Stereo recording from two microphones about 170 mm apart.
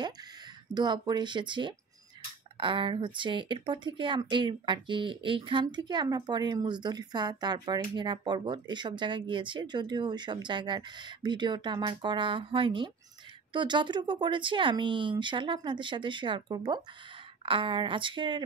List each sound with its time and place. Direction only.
0.7 s speech: 25° right (ahead or behind)